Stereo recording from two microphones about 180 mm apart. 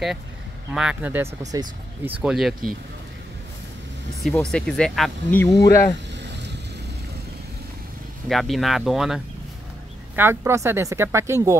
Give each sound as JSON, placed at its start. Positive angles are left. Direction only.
{"t": 0.7, "sound": "speech", "side_deg": -5}
{"t": 2.2, "sound": "speech", "side_deg": 0}
{"t": 4.2, "sound": "speech", "side_deg": 0}
{"t": 5.4, "sound": "speech", "side_deg": 20}
{"t": 8.3, "sound": "speech", "side_deg": 0}
{"t": 10.1, "sound": "speech", "side_deg": -15}